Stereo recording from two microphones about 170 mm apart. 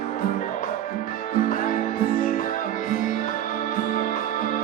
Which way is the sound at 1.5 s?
50° left (ahead or behind).